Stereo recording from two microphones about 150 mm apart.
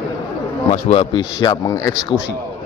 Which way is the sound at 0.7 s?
40° left (ahead or behind).